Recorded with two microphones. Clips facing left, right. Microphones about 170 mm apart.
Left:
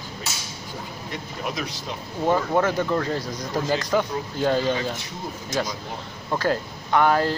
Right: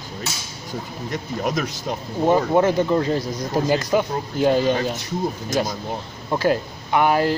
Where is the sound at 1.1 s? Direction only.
45° right (ahead or behind).